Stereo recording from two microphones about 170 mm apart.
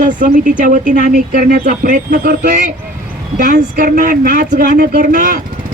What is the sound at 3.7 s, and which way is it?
Speech, 55° right (ahead or behind).